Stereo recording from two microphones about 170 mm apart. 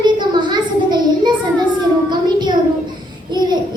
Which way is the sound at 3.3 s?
25° right (ahead or behind).